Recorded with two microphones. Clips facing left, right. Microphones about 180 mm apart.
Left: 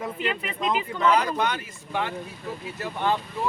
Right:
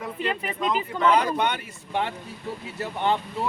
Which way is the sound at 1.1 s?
30° right (ahead or behind).